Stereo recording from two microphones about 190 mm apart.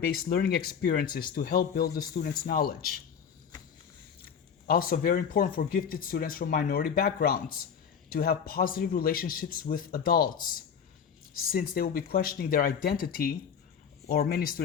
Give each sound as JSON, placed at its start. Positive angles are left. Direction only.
{"t": 0.0, "sound": "speech", "side_deg": 55}
{"t": 4.6, "sound": "speech", "side_deg": 50}
{"t": 11.3, "sound": "speech", "side_deg": 50}